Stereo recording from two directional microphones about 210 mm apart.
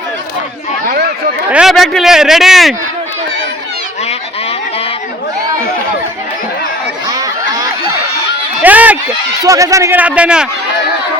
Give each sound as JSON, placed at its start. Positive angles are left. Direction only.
{"t": 1.5, "sound": "speech", "side_deg": -5}
{"t": 7.1, "sound": "crowd", "side_deg": -15}
{"t": 8.6, "sound": "a sound", "side_deg": -5}
{"t": 9.4, "sound": "speech", "side_deg": -15}